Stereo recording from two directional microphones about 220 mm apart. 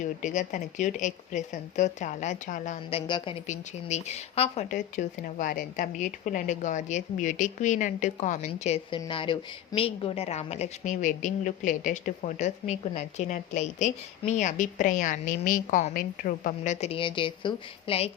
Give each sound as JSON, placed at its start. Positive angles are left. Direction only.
{"t": 0.0, "sound": "speech", "side_deg": 35}
{"t": 3.1, "sound": "speech", "side_deg": 20}